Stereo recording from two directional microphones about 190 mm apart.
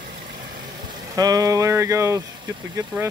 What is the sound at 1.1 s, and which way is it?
Speech, 20° right (ahead or behind).